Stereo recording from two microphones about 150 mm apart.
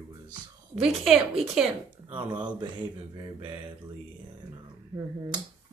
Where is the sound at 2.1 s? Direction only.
30° right (ahead or behind).